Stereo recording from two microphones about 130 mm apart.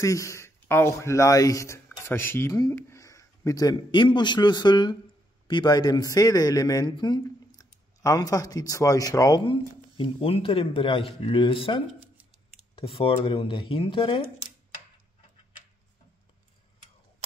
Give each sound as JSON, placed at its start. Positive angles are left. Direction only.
{"t": 0.0, "sound": "a man's voice", "side_deg": 25}
{"t": 9.5, "sound": "speech", "side_deg": 45}